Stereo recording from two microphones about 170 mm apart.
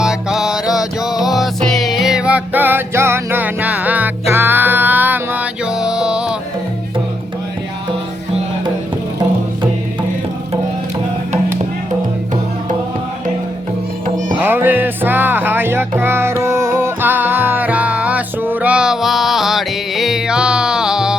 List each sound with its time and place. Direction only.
0.0 s music: 5° right (ahead or behind)
14.4 s music: 10° right (ahead or behind)